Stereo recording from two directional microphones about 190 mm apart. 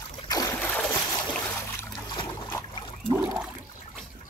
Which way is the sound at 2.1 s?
25° left (ahead or behind).